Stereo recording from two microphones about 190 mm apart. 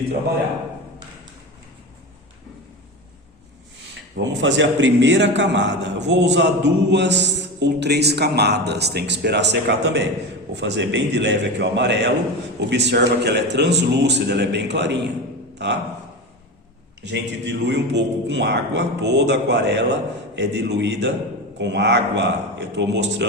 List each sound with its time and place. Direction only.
4.2 s a man's voice: 70° right (ahead or behind)
17.0 s a man's voice: 65° right (ahead or behind)